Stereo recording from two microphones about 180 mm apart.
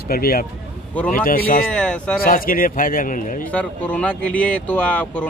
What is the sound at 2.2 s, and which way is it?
A man's voice, 50° left (ahead or behind).